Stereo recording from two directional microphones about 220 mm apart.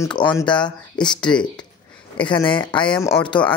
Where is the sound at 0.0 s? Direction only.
15° left (ahead or behind).